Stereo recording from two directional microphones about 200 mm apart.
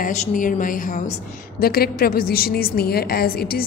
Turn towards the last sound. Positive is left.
turn(degrees=50)  # may be behind; listen again after turning